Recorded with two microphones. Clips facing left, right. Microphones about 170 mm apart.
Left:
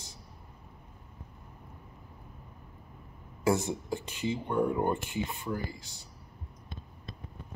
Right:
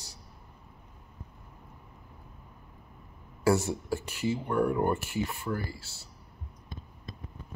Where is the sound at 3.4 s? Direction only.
15° left (ahead or behind).